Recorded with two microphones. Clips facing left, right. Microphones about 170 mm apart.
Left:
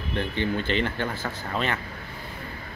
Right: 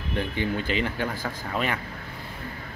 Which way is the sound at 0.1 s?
10° right (ahead or behind).